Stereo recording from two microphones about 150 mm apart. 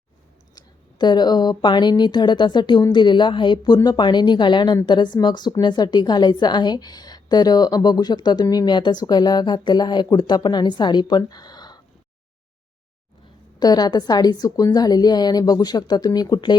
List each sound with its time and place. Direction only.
0.5 s a woman's voice: 30° left (ahead or behind)
11.2 s a sound: 25° left (ahead or behind)
13.6 s a woman's voice: 25° left (ahead or behind)